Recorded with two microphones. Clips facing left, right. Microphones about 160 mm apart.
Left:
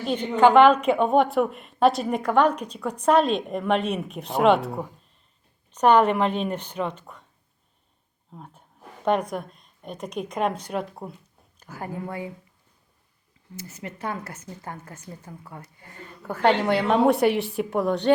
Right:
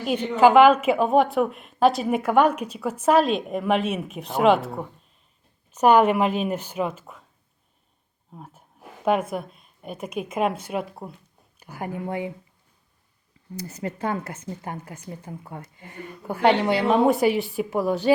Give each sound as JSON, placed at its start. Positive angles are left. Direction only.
{"t": 0.0, "sound": "a woman's voice", "side_deg": -10}
{"t": 8.3, "sound": "a woman's voice", "side_deg": -5}
{"t": 13.7, "sound": "speech", "side_deg": -35}